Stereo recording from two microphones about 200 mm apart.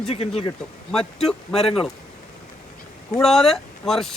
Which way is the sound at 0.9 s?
Centre (ahead or behind).